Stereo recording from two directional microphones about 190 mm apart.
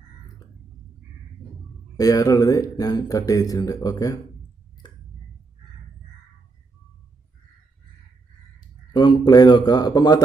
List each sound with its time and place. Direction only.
2.0 s speech: 20° left (ahead or behind)
8.5 s a man's voice: 25° left (ahead or behind)